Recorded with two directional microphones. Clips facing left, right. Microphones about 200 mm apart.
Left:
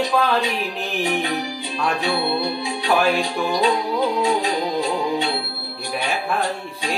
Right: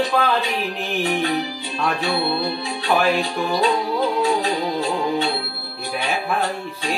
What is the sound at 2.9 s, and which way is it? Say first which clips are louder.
Speech: even; centre (ahead or behind).